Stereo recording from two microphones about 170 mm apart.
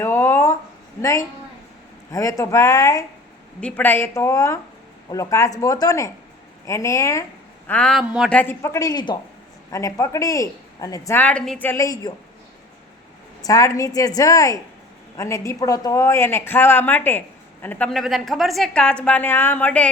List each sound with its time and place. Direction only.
0.0 s a sound: 15° left (ahead or behind)
2.1 s speech: 15° left (ahead or behind)
3.6 s a woman's voice: 5° left (ahead or behind)
7.7 s speech: 5° left (ahead or behind)
8.3 s a woman's voice: 10° left (ahead or behind)
13.4 s a woman's voice: 20° left (ahead or behind)